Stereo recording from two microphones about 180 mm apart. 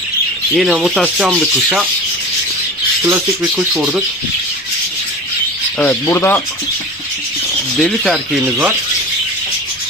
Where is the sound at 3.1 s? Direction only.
10° right (ahead or behind).